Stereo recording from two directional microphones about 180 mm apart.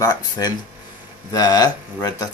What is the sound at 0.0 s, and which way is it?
Speech, 20° left (ahead or behind).